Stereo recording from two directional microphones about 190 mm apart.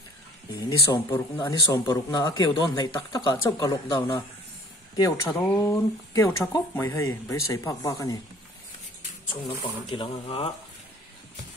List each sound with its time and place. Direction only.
0.6 s speech: 15° left (ahead or behind)
5.3 s speech: 15° left (ahead or behind)
9.3 s speech: 25° left (ahead or behind)